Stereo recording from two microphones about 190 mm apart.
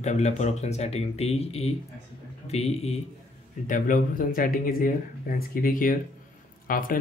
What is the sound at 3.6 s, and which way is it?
Speech, 45° left (ahead or behind).